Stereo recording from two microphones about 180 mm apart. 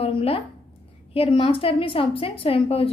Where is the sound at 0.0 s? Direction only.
30° left (ahead or behind).